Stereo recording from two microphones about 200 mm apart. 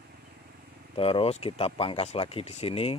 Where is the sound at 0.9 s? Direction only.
25° left (ahead or behind).